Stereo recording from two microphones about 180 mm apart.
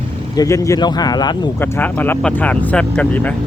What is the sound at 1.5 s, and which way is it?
Speech, 10° left (ahead or behind).